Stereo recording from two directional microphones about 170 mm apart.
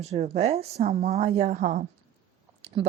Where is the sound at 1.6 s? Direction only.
50° right (ahead or behind).